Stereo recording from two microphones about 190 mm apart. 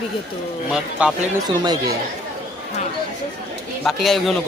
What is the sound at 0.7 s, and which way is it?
Speech, 5° right (ahead or behind).